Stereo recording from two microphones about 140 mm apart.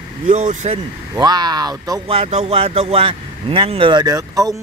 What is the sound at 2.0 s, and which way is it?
Speech, 45° right (ahead or behind).